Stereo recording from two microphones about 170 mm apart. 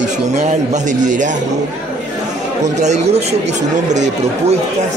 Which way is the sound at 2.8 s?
45° right (ahead or behind).